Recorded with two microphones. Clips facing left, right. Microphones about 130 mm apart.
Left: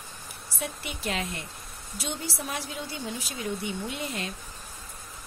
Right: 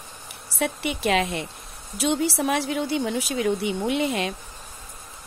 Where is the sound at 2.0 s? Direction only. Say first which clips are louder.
Right 12 dB; 75° right (ahead or behind).